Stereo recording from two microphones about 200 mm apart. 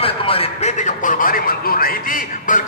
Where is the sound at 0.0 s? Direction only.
30° left (ahead or behind).